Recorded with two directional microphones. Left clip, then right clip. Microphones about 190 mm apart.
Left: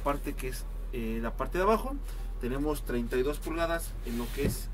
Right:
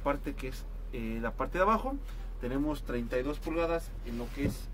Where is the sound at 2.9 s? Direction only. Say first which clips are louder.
Left 3 dB; 40° right (ahead or behind).